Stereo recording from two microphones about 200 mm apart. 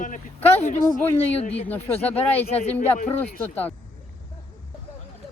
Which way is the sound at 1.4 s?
30° left (ahead or behind).